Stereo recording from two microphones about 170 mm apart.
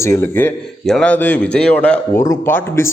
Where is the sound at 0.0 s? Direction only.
15° left (ahead or behind).